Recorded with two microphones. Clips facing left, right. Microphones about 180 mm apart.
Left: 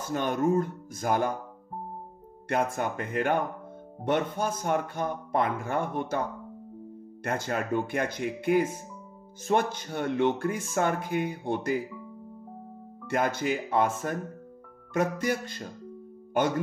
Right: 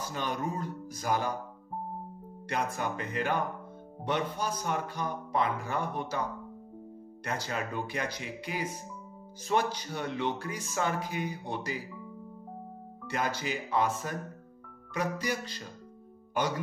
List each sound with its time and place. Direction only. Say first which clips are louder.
0.0 s speech: left 7 dB; 50° left (ahead or behind)
2.4 s speech: left 5 dB; 50° left (ahead or behind)
7.2 s speech: left 5 dB; 50° left (ahead or behind)
13.1 s speech: left 6 dB; 50° left (ahead or behind)